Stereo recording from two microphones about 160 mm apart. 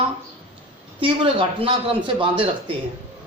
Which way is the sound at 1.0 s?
35° right (ahead or behind).